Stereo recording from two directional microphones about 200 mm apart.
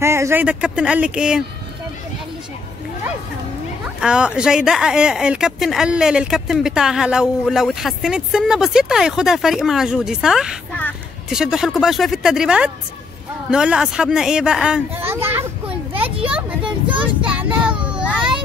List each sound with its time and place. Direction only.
0.0 s speech: 15° right (ahead or behind)
4.0 s speech: 5° right (ahead or behind)
16.6 s speech: 25° right (ahead or behind)
17.0 s speech: 5° right (ahead or behind)